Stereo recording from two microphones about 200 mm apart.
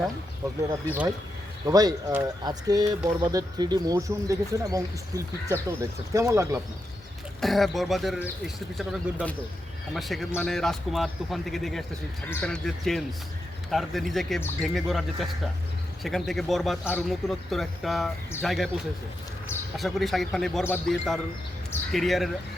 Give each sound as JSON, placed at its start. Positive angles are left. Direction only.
{"t": 1.6, "sound": "speech", "side_deg": -20}
{"t": 7.4, "sound": "speech", "side_deg": 0}
{"t": 19.7, "sound": "speech", "side_deg": 0}